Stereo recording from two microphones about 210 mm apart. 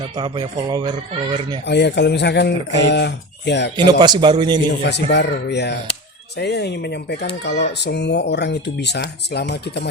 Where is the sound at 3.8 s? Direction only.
20° right (ahead or behind).